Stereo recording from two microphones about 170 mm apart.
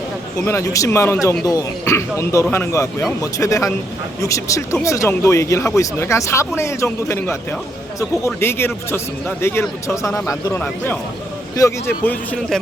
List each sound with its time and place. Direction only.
0.4 s speech: 15° left (ahead or behind)